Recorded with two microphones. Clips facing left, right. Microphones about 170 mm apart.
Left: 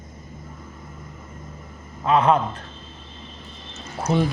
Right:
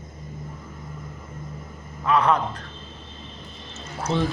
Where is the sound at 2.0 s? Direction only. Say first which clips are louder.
Left 2 dB; 20° left (ahead or behind).